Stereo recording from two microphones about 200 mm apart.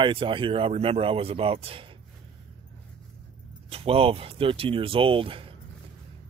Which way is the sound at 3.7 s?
30° right (ahead or behind).